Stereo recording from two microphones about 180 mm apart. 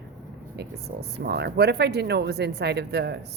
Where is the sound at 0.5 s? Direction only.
65° right (ahead or behind).